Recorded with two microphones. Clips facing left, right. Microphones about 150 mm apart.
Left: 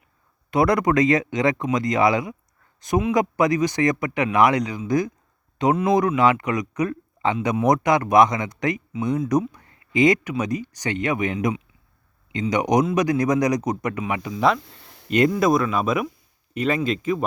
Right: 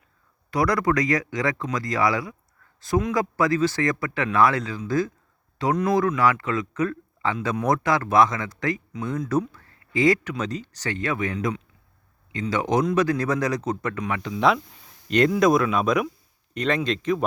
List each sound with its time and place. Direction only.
0.5 s speech: 20° left (ahead or behind); by 14.6 s centre (ahead or behind)
14.8 s a sound: 70° left (ahead or behind)
15.0 s speech: 5° left (ahead or behind)